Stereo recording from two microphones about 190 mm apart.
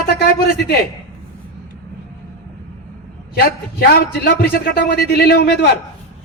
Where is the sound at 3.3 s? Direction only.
55° left (ahead or behind).